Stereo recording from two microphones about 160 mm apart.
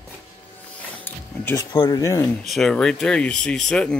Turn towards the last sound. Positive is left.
turn(degrees=5)  # may be behind; listen again after turning